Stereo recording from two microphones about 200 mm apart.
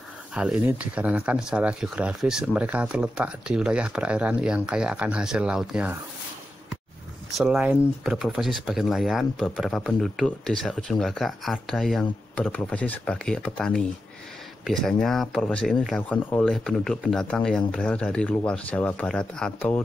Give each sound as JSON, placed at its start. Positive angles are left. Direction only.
{"t": 0.3, "sound": "speech", "side_deg": -5}
{"t": 7.3, "sound": "speech", "side_deg": -5}